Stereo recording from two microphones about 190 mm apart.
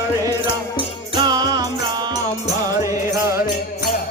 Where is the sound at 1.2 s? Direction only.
20° right (ahead or behind).